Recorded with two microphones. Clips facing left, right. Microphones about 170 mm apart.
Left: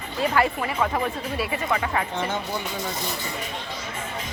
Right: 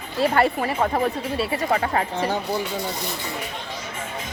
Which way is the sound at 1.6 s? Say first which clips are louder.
Right 4 dB; 40° right (ahead or behind).